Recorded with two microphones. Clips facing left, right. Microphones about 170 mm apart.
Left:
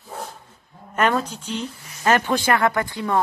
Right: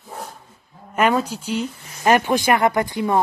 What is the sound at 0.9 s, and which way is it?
Speech, 10° right (ahead or behind).